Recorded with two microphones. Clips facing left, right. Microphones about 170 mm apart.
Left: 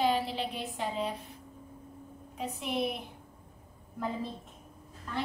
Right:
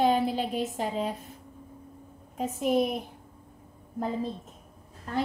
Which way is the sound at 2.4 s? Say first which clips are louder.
Right 7 dB; 45° right (ahead or behind).